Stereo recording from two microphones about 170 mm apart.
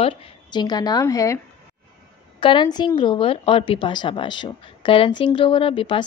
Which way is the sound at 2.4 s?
25° left (ahead or behind).